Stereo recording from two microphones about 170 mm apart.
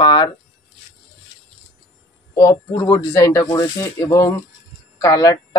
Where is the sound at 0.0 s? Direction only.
25° left (ahead or behind).